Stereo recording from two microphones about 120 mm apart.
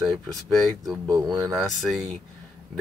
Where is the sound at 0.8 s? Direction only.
Centre (ahead or behind).